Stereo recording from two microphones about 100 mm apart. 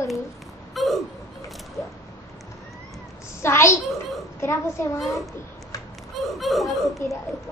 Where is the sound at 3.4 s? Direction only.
30° left (ahead or behind).